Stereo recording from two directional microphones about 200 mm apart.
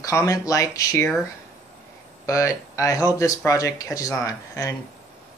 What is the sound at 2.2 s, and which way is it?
Speech, 15° left (ahead or behind).